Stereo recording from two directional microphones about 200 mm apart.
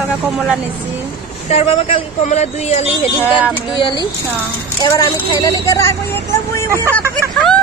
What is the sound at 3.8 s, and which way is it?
Speech, 20° left (ahead or behind).